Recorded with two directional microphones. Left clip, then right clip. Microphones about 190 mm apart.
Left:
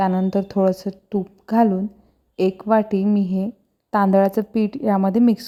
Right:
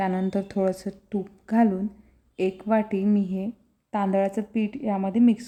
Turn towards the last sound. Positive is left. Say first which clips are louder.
# left 4 dB
turn(degrees=30)  # may be behind; listen again after turning